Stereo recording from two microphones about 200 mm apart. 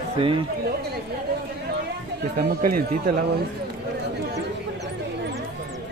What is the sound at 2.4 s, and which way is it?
Speech, 45° right (ahead or behind).